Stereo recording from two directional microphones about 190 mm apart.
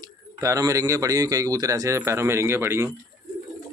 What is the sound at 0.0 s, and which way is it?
Speech, 15° right (ahead or behind).